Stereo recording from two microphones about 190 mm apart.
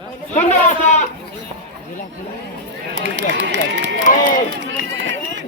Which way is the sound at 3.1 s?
75° right (ahead or behind).